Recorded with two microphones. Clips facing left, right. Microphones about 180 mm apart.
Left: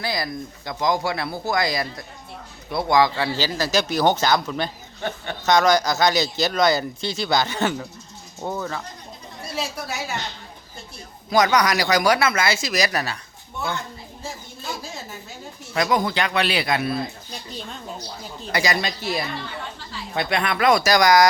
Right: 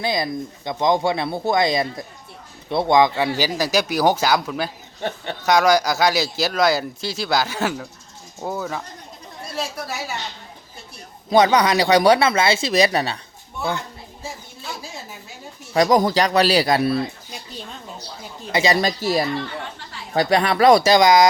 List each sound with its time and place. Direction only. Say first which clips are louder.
0.0 s speech: right 4 dB; 20° right (ahead or behind)
5.0 s speech: right 2 dB; 30° right (ahead or behind)
5.5 s a woman's voice: right 1 dB; 10° right (ahead or behind)
11.3 s speech: right 3 dB; 30° right (ahead or behind)
15.7 s speech: right 5 dB; 35° right (ahead or behind)
18.5 s speech: right 4 dB; 25° right (ahead or behind)
18.8 s speech: right 6 dB; 40° right (ahead or behind); by 21.2 s 25° right (ahead or behind)